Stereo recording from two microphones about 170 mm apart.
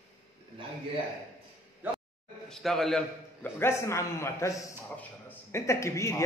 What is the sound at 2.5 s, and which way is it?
A man's voice, centre (ahead or behind).